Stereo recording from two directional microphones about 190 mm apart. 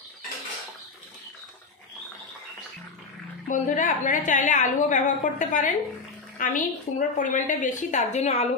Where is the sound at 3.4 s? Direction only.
45° left (ahead or behind).